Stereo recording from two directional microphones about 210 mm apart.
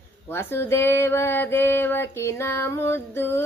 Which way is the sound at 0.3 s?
10° left (ahead or behind).